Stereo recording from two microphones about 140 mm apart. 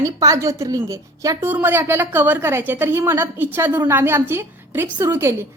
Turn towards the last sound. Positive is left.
turn(degrees=-20)  # may be behind; listen again after turning